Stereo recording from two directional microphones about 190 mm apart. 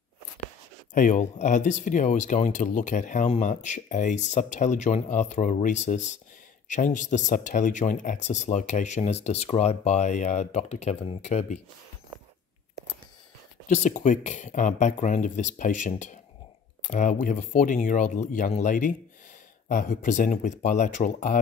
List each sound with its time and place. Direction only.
0.9 s speech: 40° left (ahead or behind)
13.7 s speech: 40° left (ahead or behind)